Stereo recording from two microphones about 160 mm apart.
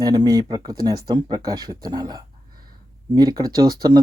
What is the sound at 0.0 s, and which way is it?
Speech, 25° right (ahead or behind).